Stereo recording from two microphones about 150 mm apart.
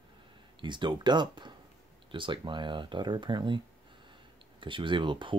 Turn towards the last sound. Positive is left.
turn(degrees=-35)  # may be behind; listen again after turning